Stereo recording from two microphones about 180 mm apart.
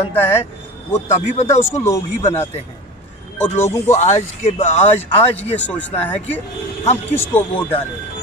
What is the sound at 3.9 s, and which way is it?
Speech, 40° left (ahead or behind).